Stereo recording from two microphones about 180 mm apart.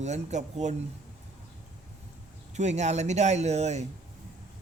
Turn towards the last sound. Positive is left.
turn(degrees=-40)  # may be behind; listen again after turning